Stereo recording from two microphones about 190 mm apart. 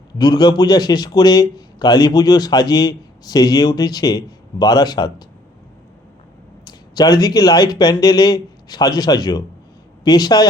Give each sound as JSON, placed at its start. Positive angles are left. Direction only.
{"t": 0.2, "sound": "a man's voice", "side_deg": 20}
{"t": 6.7, "sound": "a man's voice", "side_deg": 20}